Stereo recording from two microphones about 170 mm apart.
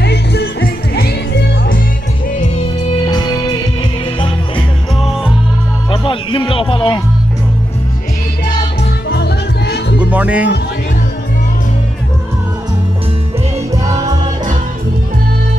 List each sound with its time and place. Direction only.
0.0 s music: 75° left (ahead or behind)
3.0 s music: 25° left (ahead or behind)
5.9 s music: 30° left (ahead or behind)
9.1 s music: 75° left (ahead or behind)
9.9 s music: 10° right (ahead or behind)
13.7 s music: 20° right (ahead or behind)